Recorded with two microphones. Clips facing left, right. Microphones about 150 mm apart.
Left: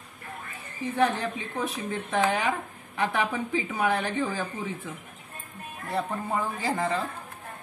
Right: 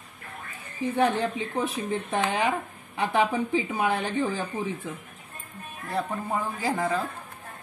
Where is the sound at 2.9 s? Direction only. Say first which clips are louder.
Right 3 dB; 20° right (ahead or behind).